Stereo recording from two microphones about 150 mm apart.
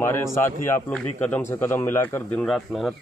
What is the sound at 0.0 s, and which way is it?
Speech, 15° left (ahead or behind).